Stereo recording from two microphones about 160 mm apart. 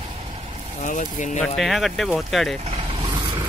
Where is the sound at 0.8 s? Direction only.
50° left (ahead or behind).